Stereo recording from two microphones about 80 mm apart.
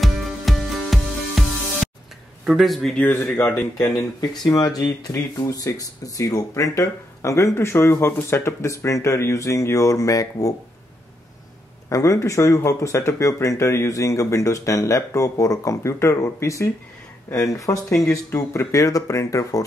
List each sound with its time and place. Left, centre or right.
0.0 s music: centre
2.4 s speech: centre
3.0 s speech: left
4.2 s speech: left
11.9 s speech: left